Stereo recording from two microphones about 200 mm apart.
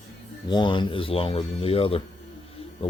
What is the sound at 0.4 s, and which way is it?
Speech, 25° left (ahead or behind).